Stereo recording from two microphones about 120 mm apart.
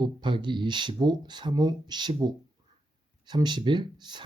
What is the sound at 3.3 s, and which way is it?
Speech, 40° right (ahead or behind).